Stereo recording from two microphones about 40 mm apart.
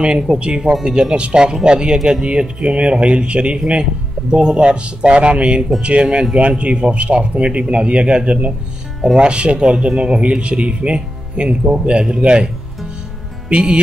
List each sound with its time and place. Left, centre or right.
0.0 s speech: right
0.8 s speech: centre
1.1 s speech: right
13.5 s speech: right